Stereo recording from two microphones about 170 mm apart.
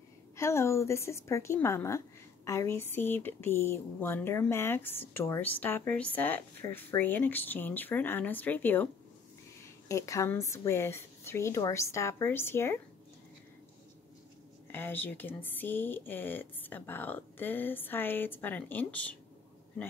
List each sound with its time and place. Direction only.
0.4 s speech: 15° left (ahead or behind)
9.8 s speech: 20° left (ahead or behind)
14.7 s speech: 10° left (ahead or behind)